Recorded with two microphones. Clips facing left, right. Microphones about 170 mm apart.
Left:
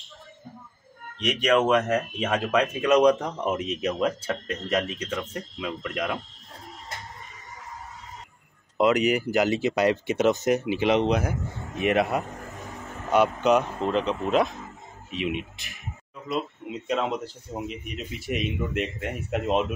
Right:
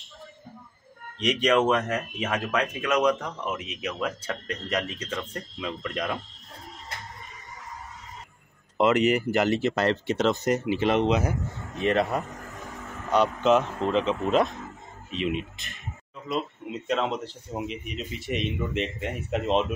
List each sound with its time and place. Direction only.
1.2 s speech: 5° left (ahead or behind)
1.9 s speech: 30° left (ahead or behind)
3.4 s speech: 40° left (ahead or behind)
4.0 s speech: 10° left (ahead or behind)
4.5 s speech: 25° left (ahead or behind)
4.9 s speech: 10° left (ahead or behind)
8.7 s speech: 5° left (ahead or behind)